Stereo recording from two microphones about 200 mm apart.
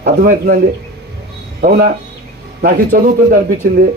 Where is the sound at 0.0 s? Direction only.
50° right (ahead or behind).